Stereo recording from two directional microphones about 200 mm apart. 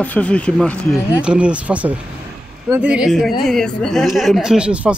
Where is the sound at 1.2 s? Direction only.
5° right (ahead or behind).